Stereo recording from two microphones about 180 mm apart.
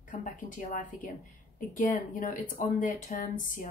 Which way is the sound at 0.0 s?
45° left (ahead or behind).